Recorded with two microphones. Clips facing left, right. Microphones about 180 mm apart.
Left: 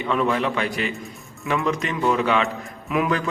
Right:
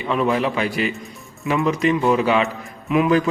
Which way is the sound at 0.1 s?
5° right (ahead or behind).